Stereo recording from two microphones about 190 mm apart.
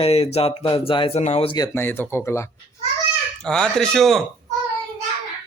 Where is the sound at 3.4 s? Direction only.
5° left (ahead or behind).